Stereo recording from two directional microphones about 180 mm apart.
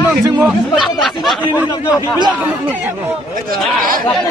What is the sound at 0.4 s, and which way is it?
Speech, centre (ahead or behind).